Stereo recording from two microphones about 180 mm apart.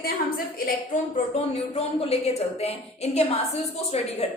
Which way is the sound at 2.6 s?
35° left (ahead or behind).